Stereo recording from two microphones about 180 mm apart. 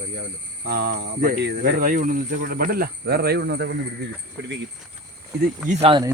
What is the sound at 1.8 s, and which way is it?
Speech, 50° right (ahead or behind).